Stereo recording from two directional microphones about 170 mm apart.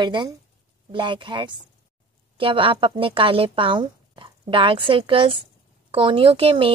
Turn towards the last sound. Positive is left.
turn(degrees=-30)  # may be behind; listen again after turning